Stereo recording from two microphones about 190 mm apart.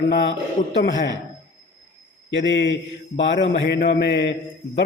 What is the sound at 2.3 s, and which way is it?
A man's voice, 75° left (ahead or behind).